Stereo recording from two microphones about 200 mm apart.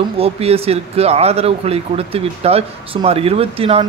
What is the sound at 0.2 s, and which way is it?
Speech, 30° right (ahead or behind).